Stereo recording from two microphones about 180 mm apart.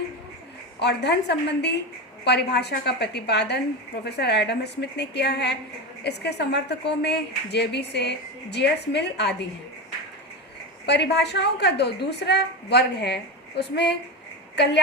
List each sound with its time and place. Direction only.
0.8 s a woman's voice: 70° left (ahead or behind)
10.8 s a woman's voice: 70° left (ahead or behind)